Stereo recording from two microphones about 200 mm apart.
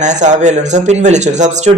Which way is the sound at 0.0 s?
35° right (ahead or behind).